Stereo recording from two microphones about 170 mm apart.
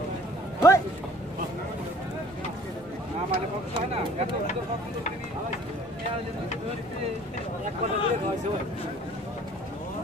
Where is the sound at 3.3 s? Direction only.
35° right (ahead or behind).